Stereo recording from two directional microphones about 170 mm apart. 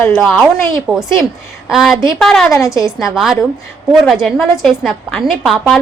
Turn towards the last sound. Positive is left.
turn(degrees=0)  # may be behind; listen again after turning